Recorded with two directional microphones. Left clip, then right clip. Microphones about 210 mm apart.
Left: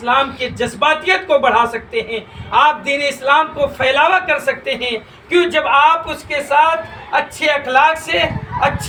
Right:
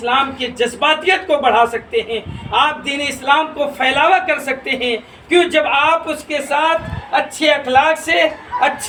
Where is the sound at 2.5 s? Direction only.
15° right (ahead or behind).